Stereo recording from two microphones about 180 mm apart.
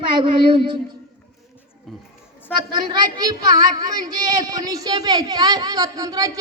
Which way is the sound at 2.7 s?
25° right (ahead or behind).